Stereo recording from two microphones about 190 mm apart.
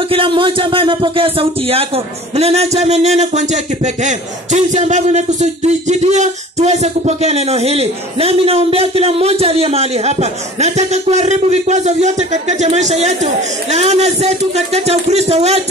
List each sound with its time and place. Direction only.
0.1 s a man's voice: 25° right (ahead or behind)